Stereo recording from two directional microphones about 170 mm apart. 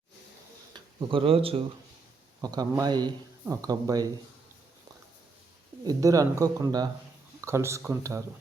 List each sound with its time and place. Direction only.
0.7 s speech: 30° right (ahead or behind)
2.4 s speech: 20° right (ahead or behind)
5.8 s speech: 20° right (ahead or behind)